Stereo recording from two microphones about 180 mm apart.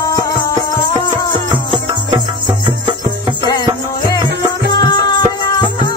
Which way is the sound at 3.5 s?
20° left (ahead or behind).